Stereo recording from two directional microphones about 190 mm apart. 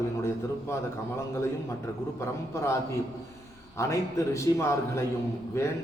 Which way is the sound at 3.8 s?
15° left (ahead or behind).